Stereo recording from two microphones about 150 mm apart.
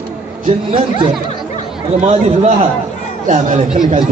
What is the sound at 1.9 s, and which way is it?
A man's voice, 45° right (ahead or behind).